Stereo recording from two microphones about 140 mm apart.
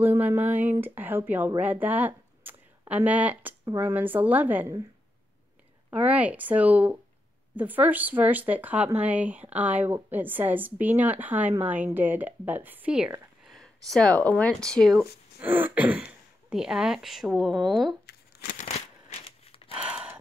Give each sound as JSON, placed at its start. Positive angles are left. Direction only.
{"t": 0.0, "sound": "speech", "side_deg": -15}
{"t": 5.9, "sound": "speech", "side_deg": -10}
{"t": 15.4, "sound": "speech", "side_deg": -15}
{"t": 18.4, "sound": "a sound", "side_deg": 75}
{"t": 18.7, "sound": "a sound", "side_deg": 45}
{"t": 19.8, "sound": "gasp", "side_deg": -10}